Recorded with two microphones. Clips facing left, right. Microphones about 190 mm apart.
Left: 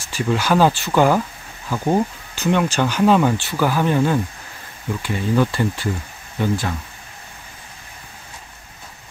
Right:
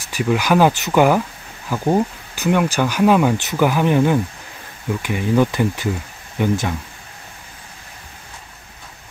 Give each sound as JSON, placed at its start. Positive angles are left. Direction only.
{"t": 0.1, "sound": "speech", "side_deg": -15}